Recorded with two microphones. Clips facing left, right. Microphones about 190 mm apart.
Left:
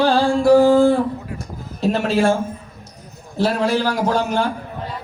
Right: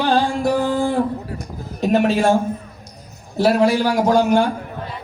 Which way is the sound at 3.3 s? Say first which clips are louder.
Right 3 dB; 10° right (ahead or behind).